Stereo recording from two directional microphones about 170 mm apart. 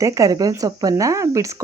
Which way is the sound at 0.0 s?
20° right (ahead or behind).